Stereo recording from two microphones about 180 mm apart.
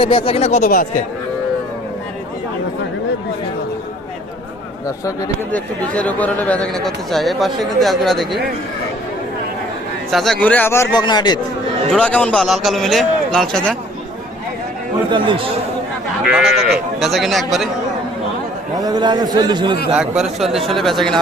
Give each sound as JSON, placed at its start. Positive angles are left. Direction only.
{"t": 0.0, "sound": "speech", "side_deg": 30}
{"t": 5.5, "sound": "speech", "side_deg": 10}
{"t": 10.1, "sound": "a man's voice", "side_deg": 0}
{"t": 11.9, "sound": "speech", "side_deg": 5}
{"t": 15.1, "sound": "a man's voice", "side_deg": -30}
{"t": 16.2, "sound": "speech", "side_deg": -5}
{"t": 18.8, "sound": "a man's voice", "side_deg": -20}
{"t": 20.0, "sound": "speech", "side_deg": -5}